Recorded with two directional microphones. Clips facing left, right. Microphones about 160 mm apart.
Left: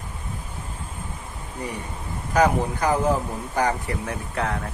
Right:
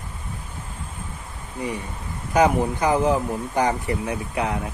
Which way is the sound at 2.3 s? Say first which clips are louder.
Right 2 dB; 15° right (ahead or behind).